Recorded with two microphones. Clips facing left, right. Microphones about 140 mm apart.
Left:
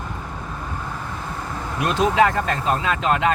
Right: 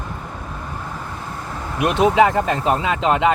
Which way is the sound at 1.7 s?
20° right (ahead or behind).